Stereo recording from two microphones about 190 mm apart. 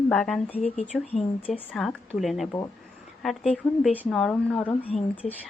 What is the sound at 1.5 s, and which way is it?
Speech, 5° left (ahead or behind).